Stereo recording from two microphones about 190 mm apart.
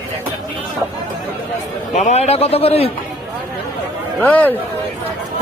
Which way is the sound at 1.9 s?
35° left (ahead or behind).